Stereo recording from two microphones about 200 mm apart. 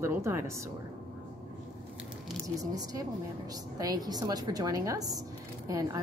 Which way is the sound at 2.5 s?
15° right (ahead or behind).